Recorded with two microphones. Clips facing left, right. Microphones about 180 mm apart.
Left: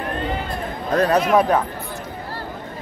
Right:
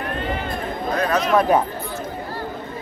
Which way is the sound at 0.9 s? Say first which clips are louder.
Left 5 dB; 35° left (ahead or behind).